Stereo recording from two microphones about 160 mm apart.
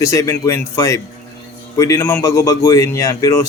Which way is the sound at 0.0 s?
20° left (ahead or behind).